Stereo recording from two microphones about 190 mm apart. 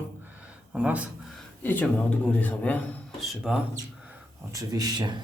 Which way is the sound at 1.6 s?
10° left (ahead or behind).